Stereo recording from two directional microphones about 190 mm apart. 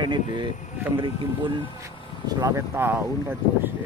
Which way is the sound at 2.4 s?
15° right (ahead or behind).